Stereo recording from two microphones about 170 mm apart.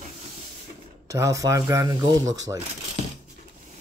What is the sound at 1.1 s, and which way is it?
Speech, 20° right (ahead or behind).